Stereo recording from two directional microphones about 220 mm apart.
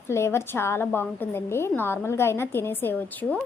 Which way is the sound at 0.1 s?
10° left (ahead or behind).